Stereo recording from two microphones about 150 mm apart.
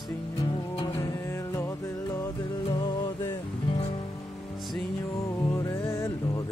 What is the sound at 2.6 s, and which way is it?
Music, 30° left (ahead or behind).